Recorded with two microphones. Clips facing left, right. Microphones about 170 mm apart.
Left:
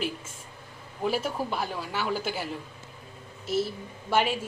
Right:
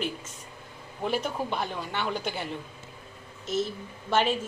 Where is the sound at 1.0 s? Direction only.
5° left (ahead or behind).